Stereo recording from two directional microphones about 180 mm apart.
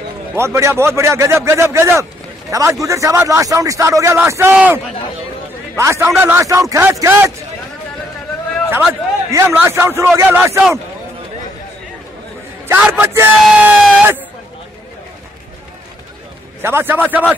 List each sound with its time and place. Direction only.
0.4 s a man's voice: 15° right (ahead or behind)
9.3 s a man's voice: 15° right (ahead or behind)
12.6 s a man's voice: 10° right (ahead or behind)
16.6 s a man's voice: 10° right (ahead or behind)